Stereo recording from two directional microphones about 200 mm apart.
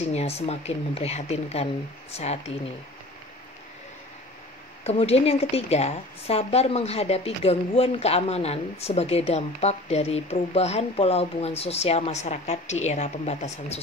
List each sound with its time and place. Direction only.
0.1 s a woman's voice: 30° left (ahead or behind)
4.8 s a woman's voice: 30° left (ahead or behind)